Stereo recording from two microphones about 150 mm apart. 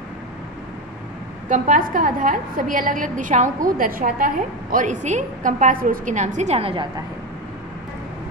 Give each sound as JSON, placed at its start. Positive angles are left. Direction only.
{"t": 1.5, "sound": "a woman's voice", "side_deg": -65}